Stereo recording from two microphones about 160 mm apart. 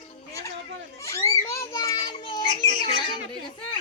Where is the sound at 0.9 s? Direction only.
20° left (ahead or behind).